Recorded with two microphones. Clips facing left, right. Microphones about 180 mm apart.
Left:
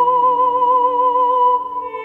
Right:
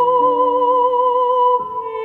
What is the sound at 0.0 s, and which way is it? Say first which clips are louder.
Music: right 2 dB; 30° right (ahead or behind).